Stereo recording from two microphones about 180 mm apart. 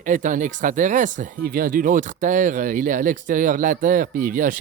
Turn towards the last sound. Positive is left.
turn(degrees=-50)  # may be behind; listen again after turning